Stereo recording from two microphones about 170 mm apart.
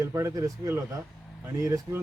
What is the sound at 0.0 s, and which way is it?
A man's voice, 15° right (ahead or behind).